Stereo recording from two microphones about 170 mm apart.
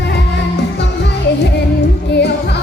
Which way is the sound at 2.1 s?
75° left (ahead or behind).